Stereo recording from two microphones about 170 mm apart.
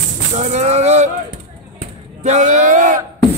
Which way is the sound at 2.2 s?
45° right (ahead or behind).